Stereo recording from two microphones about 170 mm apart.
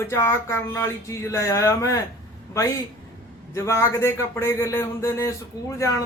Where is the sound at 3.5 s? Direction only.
15° left (ahead or behind).